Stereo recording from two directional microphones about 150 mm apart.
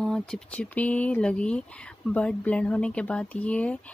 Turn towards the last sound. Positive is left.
turn(degrees=10)  # may be behind; listen again after turning